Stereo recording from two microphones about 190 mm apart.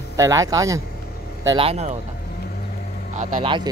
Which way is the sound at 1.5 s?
30° right (ahead or behind).